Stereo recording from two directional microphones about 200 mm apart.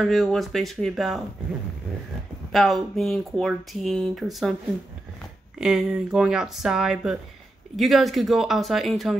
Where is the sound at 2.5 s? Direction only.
Centre (ahead or behind).